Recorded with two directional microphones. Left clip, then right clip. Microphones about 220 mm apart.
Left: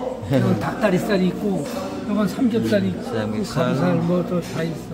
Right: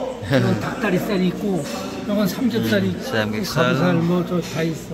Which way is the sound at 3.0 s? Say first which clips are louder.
Right 3 dB; centre (ahead or behind).